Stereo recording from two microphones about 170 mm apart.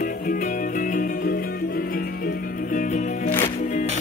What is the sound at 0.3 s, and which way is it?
Music, 50° left (ahead or behind).